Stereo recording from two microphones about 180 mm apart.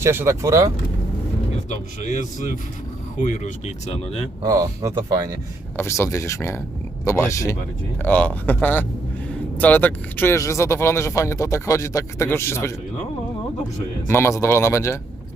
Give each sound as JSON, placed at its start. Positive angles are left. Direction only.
{"t": 0.0, "sound": "speech", "side_deg": -15}
{"t": 1.7, "sound": "speech", "side_deg": 40}
{"t": 4.4, "sound": "speech", "side_deg": -20}
{"t": 5.7, "sound": "speech", "side_deg": 15}
{"t": 14.1, "sound": "speech", "side_deg": 15}